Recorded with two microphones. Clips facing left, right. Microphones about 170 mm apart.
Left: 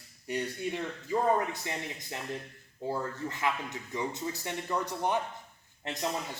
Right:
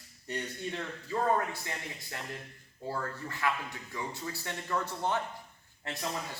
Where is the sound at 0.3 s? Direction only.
10° left (ahead or behind).